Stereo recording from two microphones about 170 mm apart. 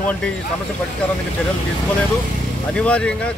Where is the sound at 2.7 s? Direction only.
5° left (ahead or behind).